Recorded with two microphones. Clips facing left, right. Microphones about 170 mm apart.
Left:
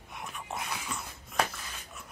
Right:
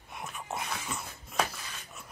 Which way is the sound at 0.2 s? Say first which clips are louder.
Right 1 dB; 5° right (ahead or behind).